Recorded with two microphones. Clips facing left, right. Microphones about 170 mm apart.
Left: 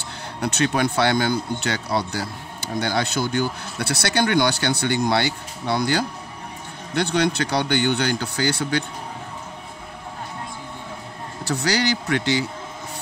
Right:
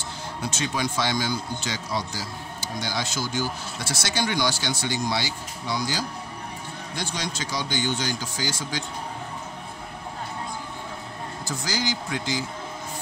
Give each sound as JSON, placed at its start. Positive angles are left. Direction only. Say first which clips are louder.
{"t": 0.4, "sound": "speech", "louder": "left 7 dB", "side_deg": 65}
{"t": 11.4, "sound": "speech", "louder": "left 7 dB", "side_deg": 70}